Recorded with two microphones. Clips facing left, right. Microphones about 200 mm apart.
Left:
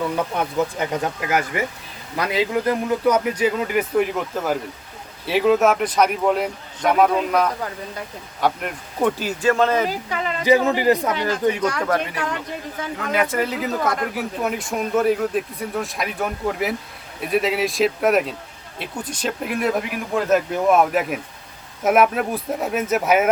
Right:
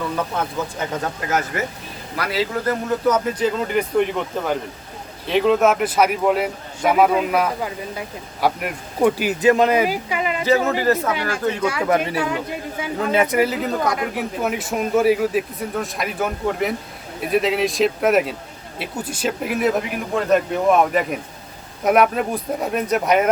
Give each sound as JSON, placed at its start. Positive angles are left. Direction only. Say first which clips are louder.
{"t": 0.3, "sound": "a man's voice", "louder": "left 3 dB", "side_deg": 15}
{"t": 10.4, "sound": "speech", "louder": "left 2 dB", "side_deg": 15}
{"t": 11.6, "sound": "a man's voice", "louder": "right 2 dB", "side_deg": -5}
{"t": 13.0, "sound": "speech", "louder": "right 4 dB", "side_deg": -25}
{"t": 13.4, "sound": "speech", "louder": "right 3 dB", "side_deg": 0}